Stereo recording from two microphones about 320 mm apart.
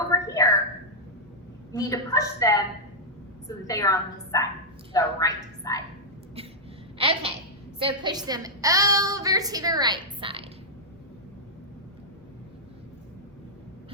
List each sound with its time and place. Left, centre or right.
0.1 s a sound: centre
1.7 s a woman's voice: centre
7.0 s a woman's voice: centre